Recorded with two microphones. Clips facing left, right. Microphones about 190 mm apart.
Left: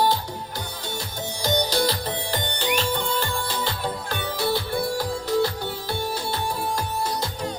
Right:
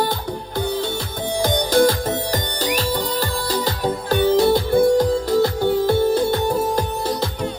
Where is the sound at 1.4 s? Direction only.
50° right (ahead or behind).